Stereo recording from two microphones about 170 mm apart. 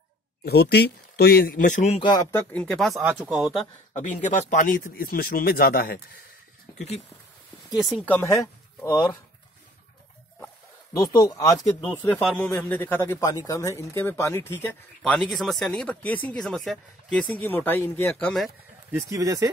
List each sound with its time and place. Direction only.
0.5 s speech: 70° left (ahead or behind); by 2.0 s 40° left (ahead or behind)
2.3 s speech: 10° left (ahead or behind)
3.0 s speech: 10° right (ahead or behind)
3.9 s speech: 45° left (ahead or behind); by 5.9 s 65° left (ahead or behind)
7.7 s speech: centre (ahead or behind)
8.0 s speech: 10° left (ahead or behind)
8.8 s speech: 25° left (ahead or behind)
11.0 s speech: 20° left (ahead or behind); by 18.5 s centre (ahead or behind)
18.9 s speech: 15° right (ahead or behind)